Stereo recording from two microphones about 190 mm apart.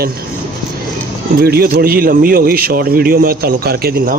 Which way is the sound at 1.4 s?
55° right (ahead or behind).